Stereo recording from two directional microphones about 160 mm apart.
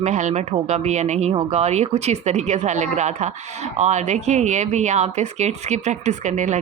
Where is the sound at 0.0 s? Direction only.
45° right (ahead or behind).